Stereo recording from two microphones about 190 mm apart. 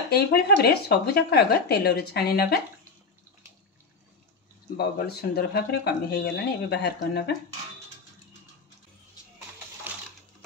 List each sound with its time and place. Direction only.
0.1 s speech: 55° left (ahead or behind)
4.7 s speech: 55° left (ahead or behind)